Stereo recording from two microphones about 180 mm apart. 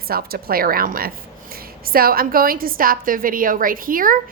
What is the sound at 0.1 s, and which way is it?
A woman's voice, 55° right (ahead or behind).